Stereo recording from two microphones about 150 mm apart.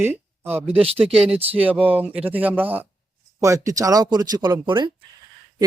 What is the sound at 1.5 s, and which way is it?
Speech, 10° right (ahead or behind).